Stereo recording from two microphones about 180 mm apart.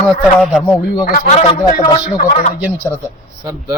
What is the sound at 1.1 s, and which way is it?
Speech, 45° left (ahead or behind).